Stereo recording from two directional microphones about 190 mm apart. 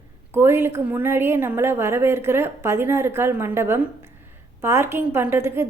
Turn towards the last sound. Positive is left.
turn(degrees=-10)  # may be behind; listen again after turning